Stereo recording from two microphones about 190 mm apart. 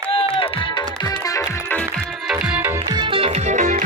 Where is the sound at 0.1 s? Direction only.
30° left (ahead or behind).